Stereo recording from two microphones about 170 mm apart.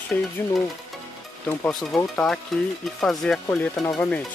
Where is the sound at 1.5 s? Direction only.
5° left (ahead or behind).